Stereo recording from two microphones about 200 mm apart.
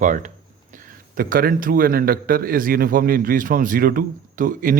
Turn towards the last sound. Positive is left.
turn(degrees=-45)  # may be behind; listen again after turning